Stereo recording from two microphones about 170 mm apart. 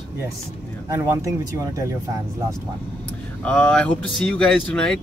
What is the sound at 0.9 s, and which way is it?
Speech, 15° right (ahead or behind).